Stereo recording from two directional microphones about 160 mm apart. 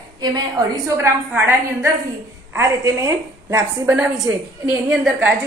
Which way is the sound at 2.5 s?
20° right (ahead or behind).